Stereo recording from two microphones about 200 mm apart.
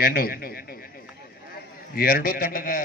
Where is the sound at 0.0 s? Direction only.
50° left (ahead or behind).